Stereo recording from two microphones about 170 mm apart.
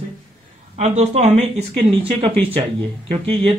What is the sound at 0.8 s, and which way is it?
Speech, 40° right (ahead or behind).